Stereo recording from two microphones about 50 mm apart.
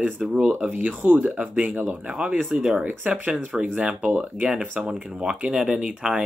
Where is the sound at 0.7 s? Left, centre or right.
Right; by 2.8 s centre.